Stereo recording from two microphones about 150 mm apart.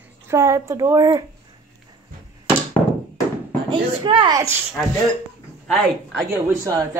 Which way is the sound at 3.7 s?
35° right (ahead or behind).